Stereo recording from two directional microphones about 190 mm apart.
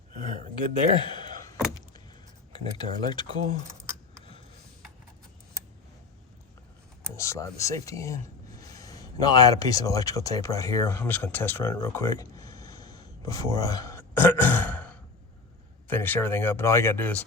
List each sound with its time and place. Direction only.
0.1 s a sound: 45° right (ahead or behind)
2.5 s speech: 25° left (ahead or behind)
3.2 s speech: 35° right (ahead or behind)
7.2 s speech: 15° left (ahead or behind)